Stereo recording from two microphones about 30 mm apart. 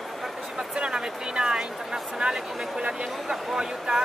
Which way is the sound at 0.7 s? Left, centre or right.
Right.